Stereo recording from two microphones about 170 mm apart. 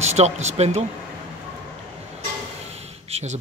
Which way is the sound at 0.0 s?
40° right (ahead or behind).